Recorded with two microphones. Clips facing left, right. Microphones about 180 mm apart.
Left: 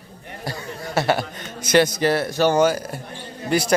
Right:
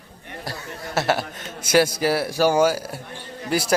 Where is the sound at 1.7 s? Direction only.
5° right (ahead or behind).